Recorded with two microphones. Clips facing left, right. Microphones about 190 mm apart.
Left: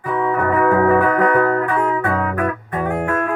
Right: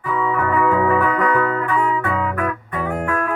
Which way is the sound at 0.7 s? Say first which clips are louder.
Left 5 dB; 55° left (ahead or behind).